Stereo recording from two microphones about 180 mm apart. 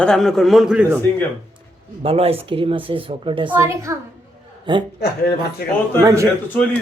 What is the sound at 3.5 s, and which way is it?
Speech, 15° right (ahead or behind).